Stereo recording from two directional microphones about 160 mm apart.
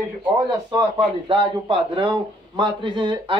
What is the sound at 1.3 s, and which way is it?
A man's voice, 30° right (ahead or behind).